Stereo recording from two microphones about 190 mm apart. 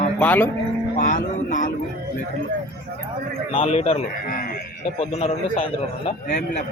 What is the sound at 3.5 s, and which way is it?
Speech, 30° left (ahead or behind).